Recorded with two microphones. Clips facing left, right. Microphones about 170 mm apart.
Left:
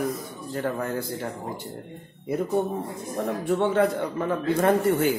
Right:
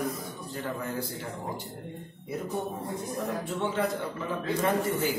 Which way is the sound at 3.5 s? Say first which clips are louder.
Left 10 dB; 60° left (ahead or behind).